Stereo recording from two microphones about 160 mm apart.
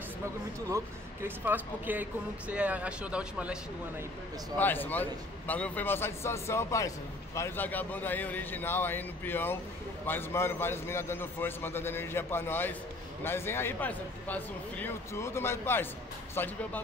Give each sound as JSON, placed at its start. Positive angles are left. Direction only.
{"t": 0.7, "sound": "speech", "side_deg": -15}
{"t": 4.6, "sound": "a man's voice", "side_deg": 10}